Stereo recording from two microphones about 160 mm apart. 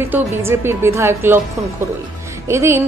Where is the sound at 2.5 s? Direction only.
15° right (ahead or behind).